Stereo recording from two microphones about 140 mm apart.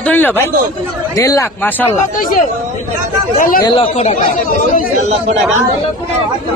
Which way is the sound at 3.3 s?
85° left.